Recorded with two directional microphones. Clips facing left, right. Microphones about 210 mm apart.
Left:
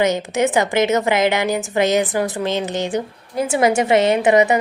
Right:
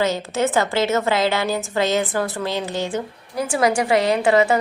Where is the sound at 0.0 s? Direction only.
15° left (ahead or behind).